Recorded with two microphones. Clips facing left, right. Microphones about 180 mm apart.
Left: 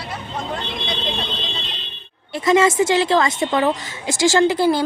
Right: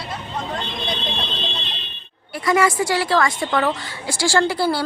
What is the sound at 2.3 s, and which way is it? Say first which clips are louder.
A woman's voice: left 3 dB; 25° left (ahead or behind).